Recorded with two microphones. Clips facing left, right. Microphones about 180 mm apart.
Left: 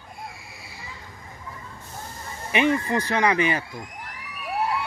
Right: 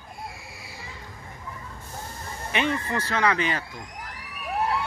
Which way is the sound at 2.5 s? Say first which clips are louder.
Left 5 dB; 15° left (ahead or behind).